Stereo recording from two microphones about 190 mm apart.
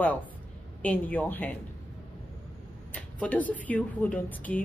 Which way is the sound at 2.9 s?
5° left (ahead or behind).